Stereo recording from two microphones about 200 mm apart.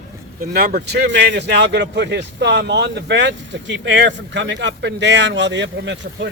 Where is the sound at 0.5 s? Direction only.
50° right (ahead or behind).